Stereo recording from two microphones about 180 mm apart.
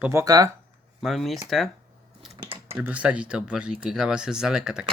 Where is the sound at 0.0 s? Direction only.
15° right (ahead or behind).